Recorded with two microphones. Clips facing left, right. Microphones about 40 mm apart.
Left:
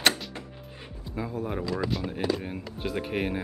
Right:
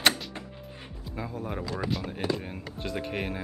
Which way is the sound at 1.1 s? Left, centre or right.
Centre.